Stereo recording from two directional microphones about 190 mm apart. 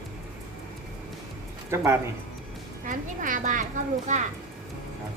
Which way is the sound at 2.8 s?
45° right (ahead or behind).